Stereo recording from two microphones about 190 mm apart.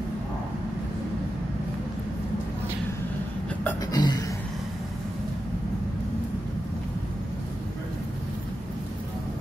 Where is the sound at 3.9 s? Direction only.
20° left (ahead or behind).